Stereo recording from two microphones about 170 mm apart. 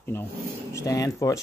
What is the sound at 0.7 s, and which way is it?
Speech, 20° left (ahead or behind).